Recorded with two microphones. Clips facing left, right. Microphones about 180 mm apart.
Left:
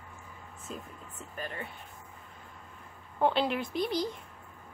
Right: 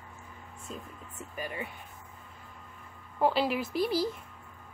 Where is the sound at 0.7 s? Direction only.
Centre (ahead or behind).